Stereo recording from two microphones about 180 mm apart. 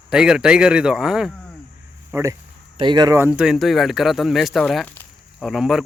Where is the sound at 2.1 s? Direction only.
15° right (ahead or behind).